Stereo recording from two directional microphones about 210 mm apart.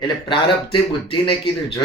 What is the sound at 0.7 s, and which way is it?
Speech, 25° left (ahead or behind).